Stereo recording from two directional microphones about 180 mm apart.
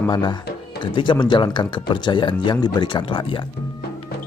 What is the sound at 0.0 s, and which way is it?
Speech, 25° left (ahead or behind).